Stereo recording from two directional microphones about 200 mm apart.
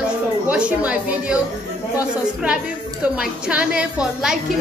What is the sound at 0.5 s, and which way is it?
Speech, 5° right (ahead or behind).